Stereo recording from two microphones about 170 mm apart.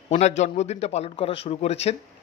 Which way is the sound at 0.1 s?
40° left (ahead or behind).